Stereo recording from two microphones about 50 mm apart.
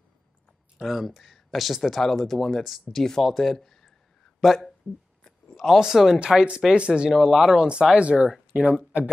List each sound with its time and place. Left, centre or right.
0.7 s speech: centre
5.8 s speech: centre
7.1 s speech: centre
7.9 s speech: centre